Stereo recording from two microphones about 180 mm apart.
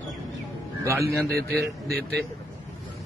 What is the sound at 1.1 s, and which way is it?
A man's voice, 60° right (ahead or behind).